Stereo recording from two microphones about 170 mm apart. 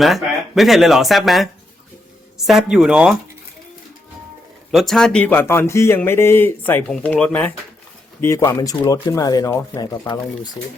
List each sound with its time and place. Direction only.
0.0 s speech: centre (ahead or behind)
2.5 s speech: centre (ahead or behind)
4.7 s speech: centre (ahead or behind); by 10.5 s 20° left (ahead or behind)